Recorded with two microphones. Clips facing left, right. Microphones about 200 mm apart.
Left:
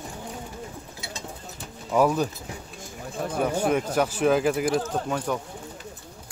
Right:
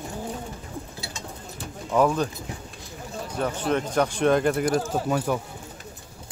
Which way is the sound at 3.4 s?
10° left (ahead or behind).